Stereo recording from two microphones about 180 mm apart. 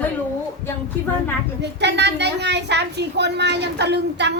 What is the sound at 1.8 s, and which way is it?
A woman's voice, 70° right (ahead or behind).